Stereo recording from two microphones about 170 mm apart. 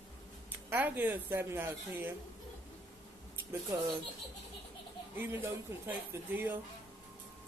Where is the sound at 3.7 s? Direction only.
15° right (ahead or behind).